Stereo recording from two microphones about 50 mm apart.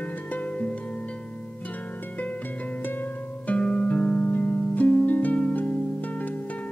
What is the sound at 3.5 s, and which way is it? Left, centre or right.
Music, left.